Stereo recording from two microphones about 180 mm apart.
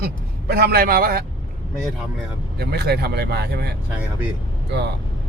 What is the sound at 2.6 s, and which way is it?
Speech, 65° right (ahead or behind).